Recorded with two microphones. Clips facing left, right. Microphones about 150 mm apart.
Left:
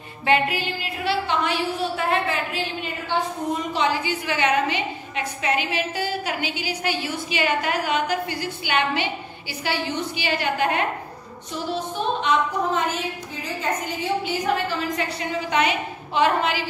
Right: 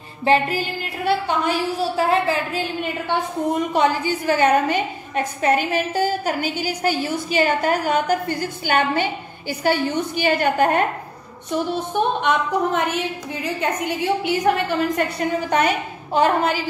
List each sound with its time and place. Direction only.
0.2 s a woman's voice: 40° right (ahead or behind)
3.7 s a woman's voice: 45° right (ahead or behind)
11.5 s a woman's voice: 60° right (ahead or behind)